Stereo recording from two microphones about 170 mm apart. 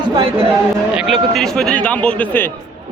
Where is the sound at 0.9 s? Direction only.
Centre (ahead or behind).